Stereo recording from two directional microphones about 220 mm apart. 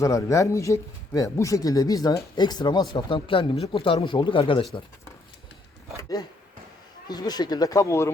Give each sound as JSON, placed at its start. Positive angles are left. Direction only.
{"t": 0.0, "sound": "speech", "side_deg": 15}
{"t": 6.0, "sound": "a sound", "side_deg": 15}
{"t": 7.1, "sound": "speech", "side_deg": 20}